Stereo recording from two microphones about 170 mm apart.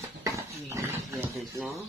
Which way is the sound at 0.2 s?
20° right (ahead or behind).